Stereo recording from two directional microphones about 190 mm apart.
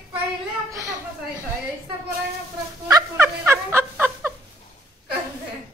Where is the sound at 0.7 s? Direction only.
15° right (ahead or behind).